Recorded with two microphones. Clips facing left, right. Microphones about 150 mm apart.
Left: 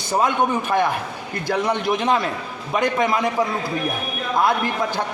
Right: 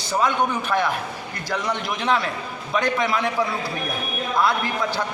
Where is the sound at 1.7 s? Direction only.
45° left (ahead or behind).